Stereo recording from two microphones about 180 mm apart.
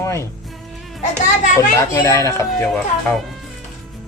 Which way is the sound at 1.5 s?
15° left (ahead or behind).